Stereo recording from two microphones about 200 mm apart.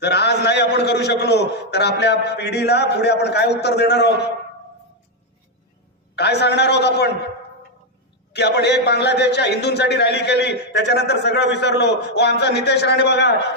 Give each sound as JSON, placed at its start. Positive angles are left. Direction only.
{"t": 0.0, "sound": "a man's voice", "side_deg": 55}
{"t": 6.1, "sound": "a man's voice", "side_deg": 55}
{"t": 8.3, "sound": "a man's voice", "side_deg": 55}